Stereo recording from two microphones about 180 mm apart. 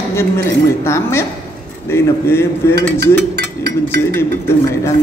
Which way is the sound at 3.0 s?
60° right (ahead or behind).